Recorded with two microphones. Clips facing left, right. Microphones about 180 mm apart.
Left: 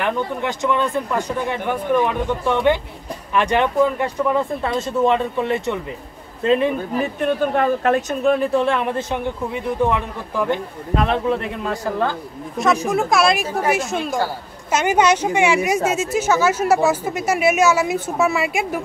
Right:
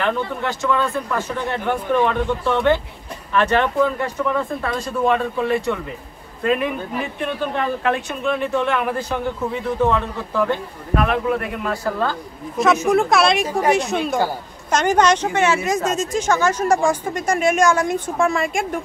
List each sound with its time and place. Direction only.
0.0 s speech: 15° left (ahead or behind)
7.0 s speech: 45° left (ahead or behind); by 12.2 s 20° left (ahead or behind)
12.9 s speech: centre (ahead or behind)